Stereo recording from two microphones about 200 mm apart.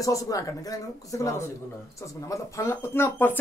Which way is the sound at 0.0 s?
15° left (ahead or behind).